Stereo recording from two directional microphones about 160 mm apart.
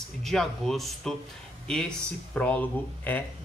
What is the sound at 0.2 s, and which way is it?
A man's voice, centre (ahead or behind).